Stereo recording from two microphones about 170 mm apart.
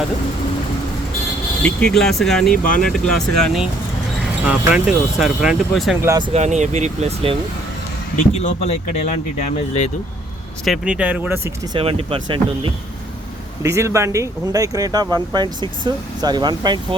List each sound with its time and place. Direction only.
1.6 s speech: 5° left (ahead or behind)
6.0 s speech: 15° right (ahead or behind)
6.3 s speech: 45° right (ahead or behind)
8.1 s speech: 45° left (ahead or behind)
10.7 s speech: 5° right (ahead or behind)
11.7 s speech: 35° right (ahead or behind)
13.6 s speech: 15° right (ahead or behind)